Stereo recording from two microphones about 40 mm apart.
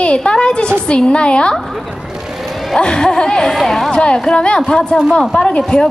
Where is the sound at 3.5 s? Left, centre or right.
Centre.